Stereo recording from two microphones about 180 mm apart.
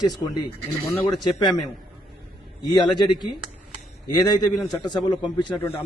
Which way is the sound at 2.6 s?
25° left (ahead or behind).